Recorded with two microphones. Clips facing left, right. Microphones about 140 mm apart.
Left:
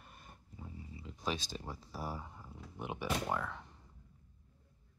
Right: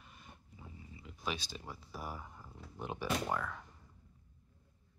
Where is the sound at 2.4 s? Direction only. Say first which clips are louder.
Right 1 dB; 10° left (ahead or behind).